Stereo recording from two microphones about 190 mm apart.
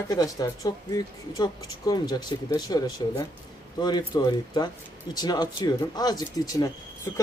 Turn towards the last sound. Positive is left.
turn(degrees=20)  # may be behind; listen again after turning